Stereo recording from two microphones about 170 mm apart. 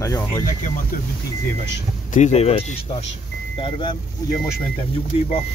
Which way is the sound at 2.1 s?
45° left (ahead or behind).